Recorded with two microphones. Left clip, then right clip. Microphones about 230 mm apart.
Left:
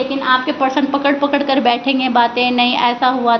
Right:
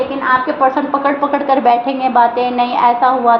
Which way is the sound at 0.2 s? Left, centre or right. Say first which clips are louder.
Right 3 dB; left.